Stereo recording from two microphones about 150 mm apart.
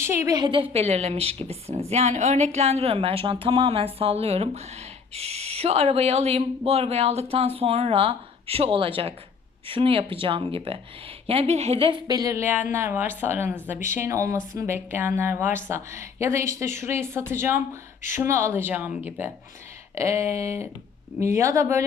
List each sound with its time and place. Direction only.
0.0 s speech: 15° right (ahead or behind)
0.3 s speech: 35° right (ahead or behind)